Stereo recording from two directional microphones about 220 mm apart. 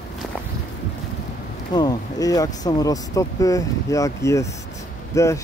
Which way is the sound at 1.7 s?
15° left (ahead or behind).